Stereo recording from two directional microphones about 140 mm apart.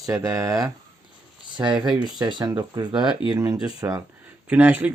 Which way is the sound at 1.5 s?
35° right (ahead or behind).